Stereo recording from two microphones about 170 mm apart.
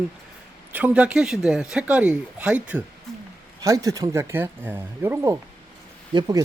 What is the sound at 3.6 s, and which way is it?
Speech, 20° right (ahead or behind).